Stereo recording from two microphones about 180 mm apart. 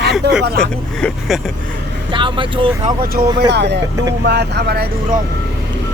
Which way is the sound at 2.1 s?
25° right (ahead or behind).